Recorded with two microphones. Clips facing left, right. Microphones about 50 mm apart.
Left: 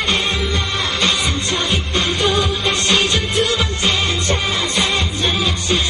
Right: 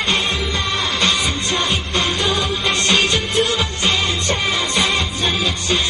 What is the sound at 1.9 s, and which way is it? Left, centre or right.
Music, left.